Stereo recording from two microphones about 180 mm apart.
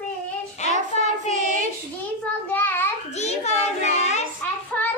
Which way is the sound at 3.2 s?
40° left (ahead or behind).